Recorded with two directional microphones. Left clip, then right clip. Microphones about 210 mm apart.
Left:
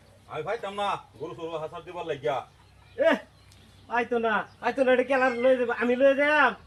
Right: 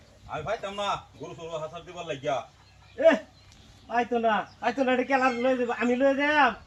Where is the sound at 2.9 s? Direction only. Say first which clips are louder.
Right 2 dB; centre (ahead or behind).